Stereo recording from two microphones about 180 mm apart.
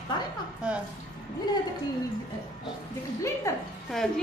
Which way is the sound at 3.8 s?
Centre (ahead or behind).